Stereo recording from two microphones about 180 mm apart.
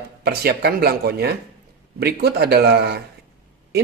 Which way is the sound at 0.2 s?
60° right (ahead or behind).